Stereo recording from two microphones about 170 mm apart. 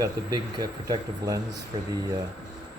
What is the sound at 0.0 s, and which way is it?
Speech, 25° right (ahead or behind).